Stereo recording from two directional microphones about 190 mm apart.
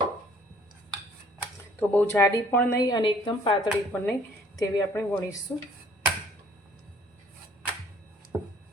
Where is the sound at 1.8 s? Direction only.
10° left (ahead or behind).